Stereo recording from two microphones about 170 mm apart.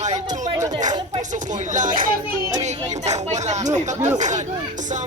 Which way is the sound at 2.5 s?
45° right (ahead or behind).